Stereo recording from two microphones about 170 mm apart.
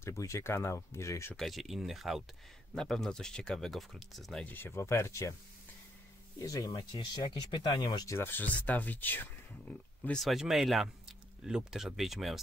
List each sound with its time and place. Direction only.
0.0 s speech: 15° left (ahead or behind)
1.3 s speech: centre (ahead or behind); by 5.3 s 15° left (ahead or behind)
6.4 s speech: 20° left (ahead or behind); by 12.4 s centre (ahead or behind)